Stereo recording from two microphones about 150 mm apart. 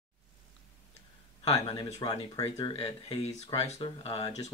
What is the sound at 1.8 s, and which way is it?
Speech, 25° left (ahead or behind).